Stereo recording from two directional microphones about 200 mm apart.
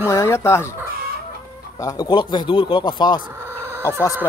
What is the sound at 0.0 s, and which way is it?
Speech, 15° left (ahead or behind).